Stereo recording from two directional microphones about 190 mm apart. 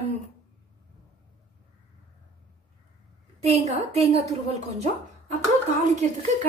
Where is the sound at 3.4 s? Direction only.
35° right (ahead or behind).